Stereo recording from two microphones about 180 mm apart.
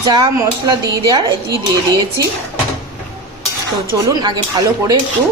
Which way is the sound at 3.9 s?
20° right (ahead or behind).